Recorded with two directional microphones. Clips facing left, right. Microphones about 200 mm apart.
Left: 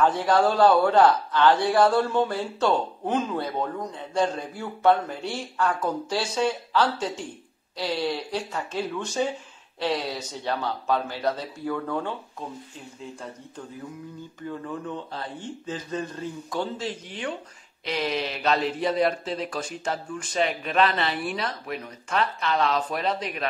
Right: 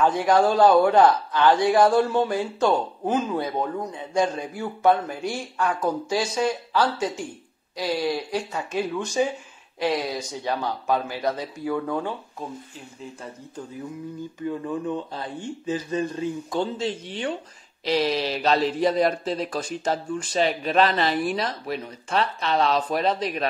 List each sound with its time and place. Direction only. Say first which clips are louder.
0.0 s a man's voice: right 2 dB; 15° right (ahead or behind)
14.9 s a man's voice: right 4 dB; 15° right (ahead or behind); by 23.4 s 35° right (ahead or behind)